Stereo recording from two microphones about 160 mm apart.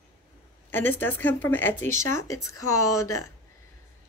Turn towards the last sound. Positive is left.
turn(degrees=20)  # may be behind; listen again after turning